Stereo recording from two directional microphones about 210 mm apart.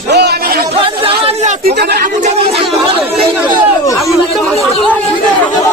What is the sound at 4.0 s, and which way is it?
Speech, 5° left (ahead or behind).